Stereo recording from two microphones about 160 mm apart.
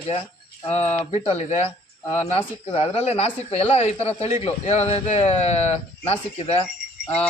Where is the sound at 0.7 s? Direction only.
45° left (ahead or behind).